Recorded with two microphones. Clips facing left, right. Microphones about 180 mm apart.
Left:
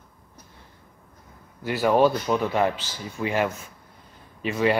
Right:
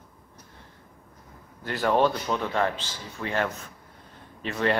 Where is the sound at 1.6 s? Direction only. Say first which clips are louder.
Left 3 dB; 5° left (ahead or behind).